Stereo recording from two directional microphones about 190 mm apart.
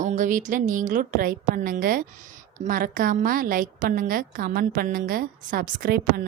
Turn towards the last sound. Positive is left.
turn(degrees=-50)  # may be behind; listen again after turning